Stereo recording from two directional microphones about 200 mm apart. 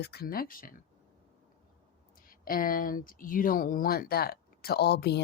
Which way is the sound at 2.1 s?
45° left (ahead or behind).